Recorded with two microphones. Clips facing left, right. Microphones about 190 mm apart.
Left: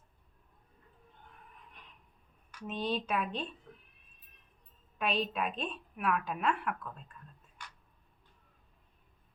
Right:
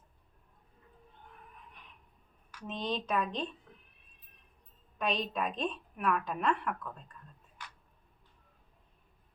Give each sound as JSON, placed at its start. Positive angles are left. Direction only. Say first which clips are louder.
{"t": 2.5, "sound": "speech", "louder": "left 1 dB", "side_deg": 5}
{"t": 4.9, "sound": "a woman's voice", "louder": "even", "side_deg": 5}